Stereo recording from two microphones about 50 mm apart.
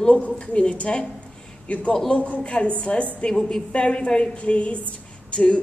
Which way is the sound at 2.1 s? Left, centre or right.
Left.